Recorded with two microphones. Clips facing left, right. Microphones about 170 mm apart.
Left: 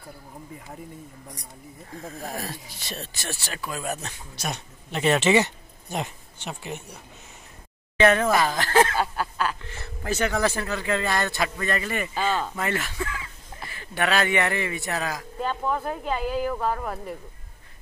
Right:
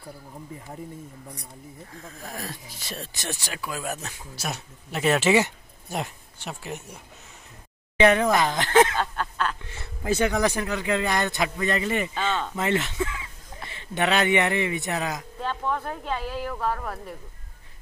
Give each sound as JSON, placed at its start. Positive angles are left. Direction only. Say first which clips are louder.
{"t": 2.0, "sound": "speech", "louder": "left 4 dB", "side_deg": 30}
{"t": 2.9, "sound": "speech", "louder": "right 1 dB", "side_deg": -15}
{"t": 8.0, "sound": "speech", "louder": "even", "side_deg": -15}
{"t": 8.9, "sound": "a sound", "louder": "left 2 dB", "side_deg": 10}
{"t": 9.6, "sound": "speech", "louder": "left 1 dB", "side_deg": -15}
{"t": 12.1, "sound": "speech", "louder": "left 2 dB", "side_deg": 5}
{"t": 12.5, "sound": "speech", "louder": "right 3 dB", "side_deg": -20}
{"t": 15.5, "sound": "speech", "louder": "left 1 dB", "side_deg": 5}